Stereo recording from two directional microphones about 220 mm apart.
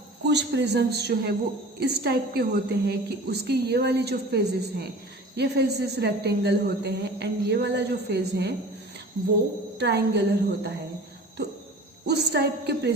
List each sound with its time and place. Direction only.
0.3 s a woman's voice: 50° right (ahead or behind)
9.7 s a woman's voice: 50° right (ahead or behind)
12.0 s a woman's voice: 50° right (ahead or behind)